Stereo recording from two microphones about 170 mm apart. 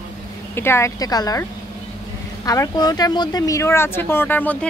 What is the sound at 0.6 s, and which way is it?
Speech, 15° left (ahead or behind).